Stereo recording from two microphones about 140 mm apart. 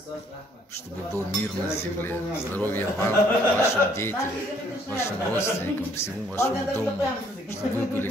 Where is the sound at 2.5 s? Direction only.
15° left (ahead or behind).